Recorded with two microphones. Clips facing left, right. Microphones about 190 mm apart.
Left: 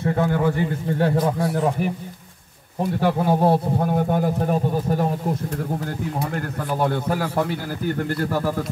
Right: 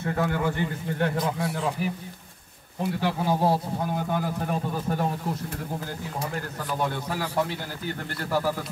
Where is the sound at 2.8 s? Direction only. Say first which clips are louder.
Left 6 dB; 50° left (ahead or behind).